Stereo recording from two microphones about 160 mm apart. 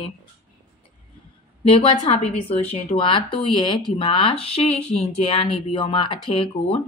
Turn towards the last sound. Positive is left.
turn(degrees=35)  # may be behind; listen again after turning